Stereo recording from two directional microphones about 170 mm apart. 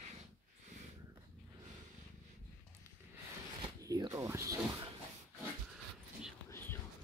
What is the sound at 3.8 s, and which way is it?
Zipper, 20° right (ahead or behind).